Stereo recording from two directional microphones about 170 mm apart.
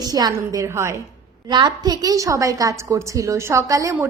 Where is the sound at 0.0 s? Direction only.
20° right (ahead or behind).